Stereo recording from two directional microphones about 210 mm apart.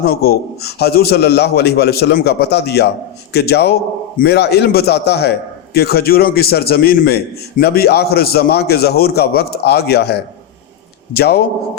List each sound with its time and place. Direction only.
0.0 s a man's voice: 50° left (ahead or behind)